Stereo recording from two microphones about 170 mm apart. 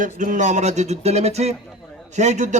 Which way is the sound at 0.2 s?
50° right (ahead or behind).